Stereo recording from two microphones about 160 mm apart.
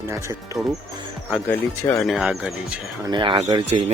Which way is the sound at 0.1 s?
15° right (ahead or behind).